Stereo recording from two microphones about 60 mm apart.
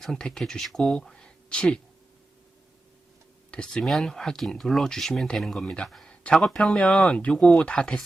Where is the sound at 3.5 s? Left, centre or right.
Centre.